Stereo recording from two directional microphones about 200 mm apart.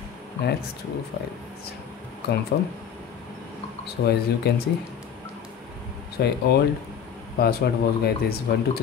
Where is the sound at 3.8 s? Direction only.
55° left (ahead or behind).